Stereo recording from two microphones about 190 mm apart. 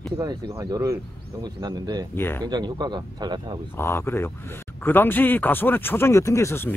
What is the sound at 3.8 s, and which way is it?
A man's voice, 10° left (ahead or behind).